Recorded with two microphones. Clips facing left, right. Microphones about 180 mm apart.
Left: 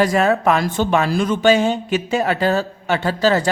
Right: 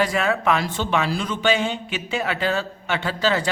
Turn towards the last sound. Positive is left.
turn(degrees=40)  # may be behind; listen again after turning